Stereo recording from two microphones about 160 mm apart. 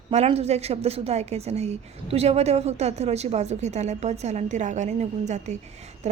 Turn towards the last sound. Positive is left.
turn(degrees=-45)  # may be behind; listen again after turning